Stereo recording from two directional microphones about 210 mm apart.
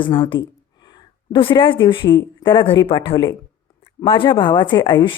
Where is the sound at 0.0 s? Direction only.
25° left (ahead or behind).